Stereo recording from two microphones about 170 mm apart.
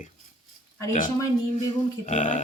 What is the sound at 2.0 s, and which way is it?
Speech, 45° left (ahead or behind).